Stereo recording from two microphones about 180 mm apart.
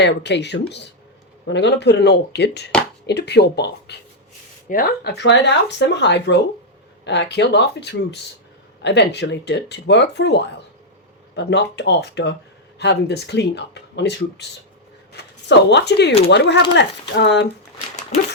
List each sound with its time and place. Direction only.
0.0 s speech: 70° left (ahead or behind)
4.7 s speech: 55° left (ahead or behind); by 17.5 s 75° left (ahead or behind)